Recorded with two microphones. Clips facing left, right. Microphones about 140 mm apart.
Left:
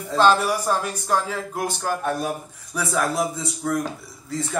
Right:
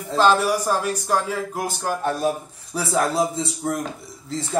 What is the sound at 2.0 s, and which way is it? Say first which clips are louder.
A man's voice: right 3 dB; 30° right (ahead or behind).